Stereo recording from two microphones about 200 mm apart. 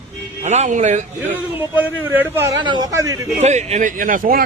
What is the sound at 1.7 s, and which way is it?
A man's voice, 10° right (ahead or behind).